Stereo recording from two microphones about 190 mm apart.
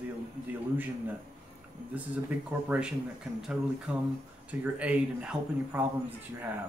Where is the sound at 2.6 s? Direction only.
5° right (ahead or behind).